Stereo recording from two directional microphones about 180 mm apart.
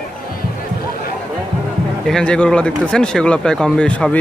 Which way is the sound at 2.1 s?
5° left (ahead or behind).